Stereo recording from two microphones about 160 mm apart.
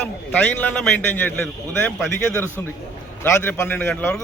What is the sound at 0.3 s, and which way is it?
Speech, 10° left (ahead or behind).